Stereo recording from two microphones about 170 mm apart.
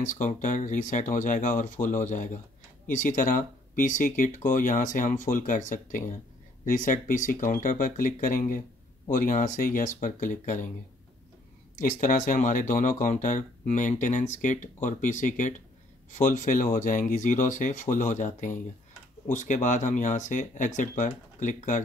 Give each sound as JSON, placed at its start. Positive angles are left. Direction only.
{"t": 0.2, "sound": "speech", "side_deg": 45}
{"t": 11.8, "sound": "speech", "side_deg": 50}